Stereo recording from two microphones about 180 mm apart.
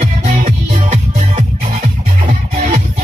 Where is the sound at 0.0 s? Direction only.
40° right (ahead or behind).